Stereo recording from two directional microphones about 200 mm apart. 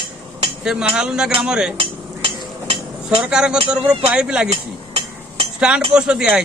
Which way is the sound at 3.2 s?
5° right (ahead or behind).